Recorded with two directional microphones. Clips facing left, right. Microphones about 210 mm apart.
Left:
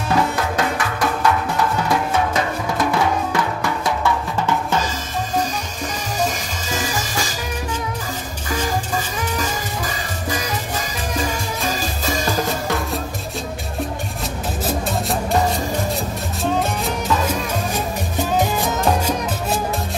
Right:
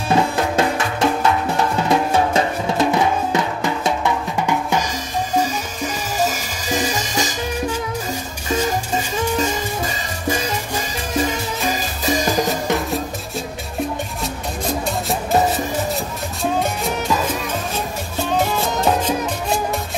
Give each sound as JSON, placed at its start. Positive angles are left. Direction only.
{"t": 0.1, "sound": "music", "side_deg": -25}
{"t": 6.8, "sound": "music", "side_deg": -20}
{"t": 8.5, "sound": "music", "side_deg": -25}
{"t": 11.6, "sound": "music", "side_deg": -20}
{"t": 14.2, "sound": "music", "side_deg": 0}